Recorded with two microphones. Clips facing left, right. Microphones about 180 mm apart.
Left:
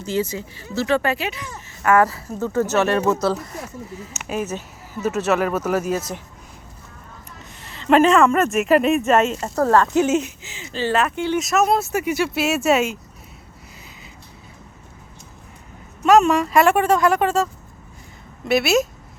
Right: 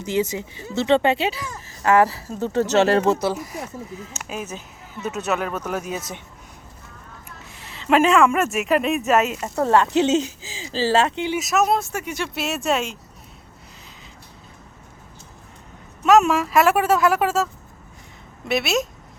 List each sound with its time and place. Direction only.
0.0 s speech: 20° right (ahead or behind)
3.9 s speech: 5° left (ahead or behind)
7.6 s speech: centre (ahead or behind)
9.6 s speech: 25° right (ahead or behind)
11.3 s speech: centre (ahead or behind)
16.0 s speech: centre (ahead or behind)